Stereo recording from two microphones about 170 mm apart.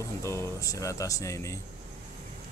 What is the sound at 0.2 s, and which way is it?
Speech, 15° left (ahead or behind).